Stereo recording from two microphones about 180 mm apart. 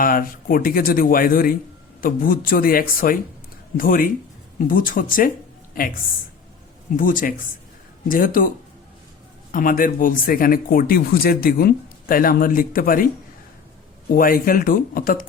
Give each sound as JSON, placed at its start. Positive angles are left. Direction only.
{"t": 0.0, "sound": "speech", "side_deg": 50}
{"t": 6.9, "sound": "speech", "side_deg": 50}
{"t": 14.1, "sound": "speech", "side_deg": 50}